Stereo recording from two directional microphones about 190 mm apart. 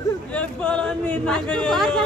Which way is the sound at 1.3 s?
Centre (ahead or behind).